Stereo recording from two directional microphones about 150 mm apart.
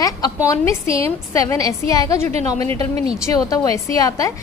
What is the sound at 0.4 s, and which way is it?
A woman's voice, 20° left (ahead or behind).